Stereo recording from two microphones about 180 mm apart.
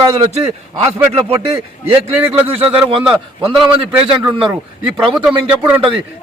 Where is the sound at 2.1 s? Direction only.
10° right (ahead or behind).